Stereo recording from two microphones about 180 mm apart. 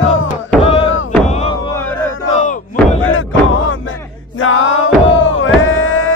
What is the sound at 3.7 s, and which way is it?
Music, 90° left.